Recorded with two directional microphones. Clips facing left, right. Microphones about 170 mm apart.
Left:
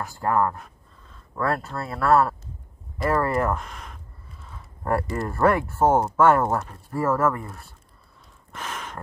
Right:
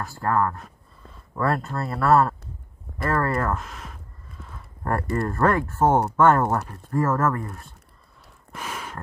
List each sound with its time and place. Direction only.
0.0 s speech: 15° left (ahead or behind)
1.3 s speech: centre (ahead or behind)
3.0 s speech: 15° left (ahead or behind)
3.5 s speech: centre (ahead or behind)
4.5 s a sound: 5° left (ahead or behind)
5.1 s speech: 10° left (ahead or behind)
8.5 s gasp: 10° right (ahead or behind)